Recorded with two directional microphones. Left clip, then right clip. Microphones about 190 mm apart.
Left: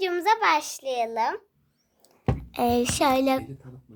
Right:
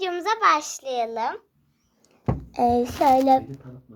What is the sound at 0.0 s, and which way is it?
A child's voice, 10° left (ahead or behind).